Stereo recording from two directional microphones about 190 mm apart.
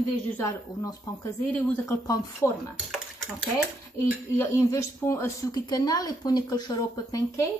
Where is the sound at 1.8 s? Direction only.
20° left (ahead or behind).